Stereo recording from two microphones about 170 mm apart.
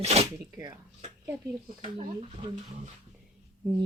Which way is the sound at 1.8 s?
35° right (ahead or behind).